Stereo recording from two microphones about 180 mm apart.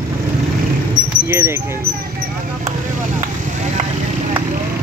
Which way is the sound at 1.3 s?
15° right (ahead or behind).